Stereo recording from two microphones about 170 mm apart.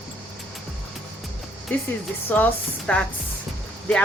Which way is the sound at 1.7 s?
10° left (ahead or behind).